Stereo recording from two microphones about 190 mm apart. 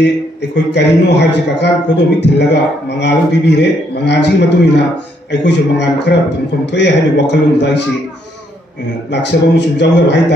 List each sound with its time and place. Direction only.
0.0 s a man's voice: 65° left (ahead or behind)
9.1 s a man's voice: 65° left (ahead or behind)